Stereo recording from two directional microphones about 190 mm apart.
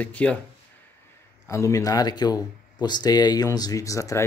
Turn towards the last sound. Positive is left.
turn(degrees=15)  # may be behind; listen again after turning